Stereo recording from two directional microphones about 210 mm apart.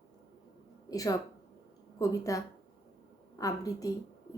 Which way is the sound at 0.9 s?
15° left (ahead or behind).